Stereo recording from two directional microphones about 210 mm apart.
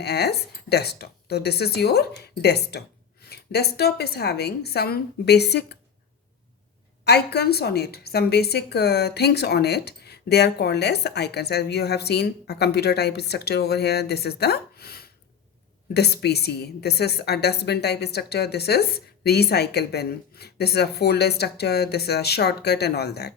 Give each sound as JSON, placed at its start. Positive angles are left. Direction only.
{"t": 0.0, "sound": "a woman's voice", "side_deg": 50}
{"t": 7.0, "sound": "a woman's voice", "side_deg": 50}